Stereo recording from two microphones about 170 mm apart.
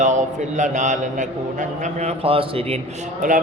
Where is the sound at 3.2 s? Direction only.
50° right (ahead or behind).